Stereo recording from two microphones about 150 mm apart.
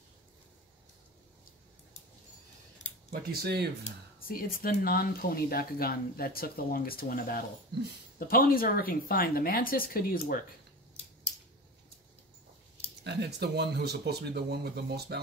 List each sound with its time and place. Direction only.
3.1 s speech: 90° right
4.2 s speech: 75° left (ahead or behind)
13.2 s speech: 90° right